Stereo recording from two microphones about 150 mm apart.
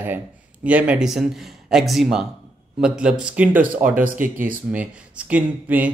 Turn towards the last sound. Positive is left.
turn(degrees=-10)  # may be behind; listen again after turning